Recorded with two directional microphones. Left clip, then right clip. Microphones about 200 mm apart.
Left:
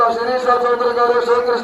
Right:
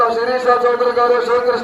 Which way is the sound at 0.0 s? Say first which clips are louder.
Right 1 dB; 30° right (ahead or behind).